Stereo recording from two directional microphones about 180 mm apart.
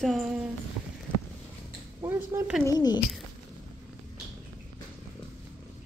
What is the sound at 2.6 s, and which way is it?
Speech, 20° left (ahead or behind).